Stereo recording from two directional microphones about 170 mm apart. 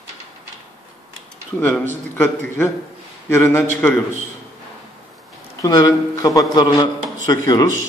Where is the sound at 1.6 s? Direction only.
10° left (ahead or behind).